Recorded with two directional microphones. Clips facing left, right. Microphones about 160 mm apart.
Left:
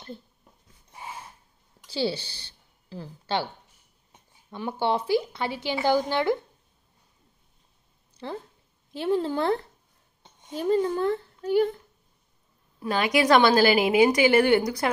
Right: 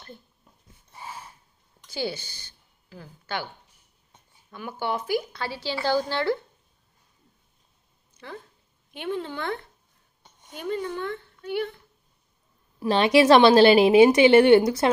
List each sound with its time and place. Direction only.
1.9 s a woman's voice: 30° left (ahead or behind)
8.2 s a woman's voice: 30° left (ahead or behind)
12.8 s a woman's voice: 25° right (ahead or behind)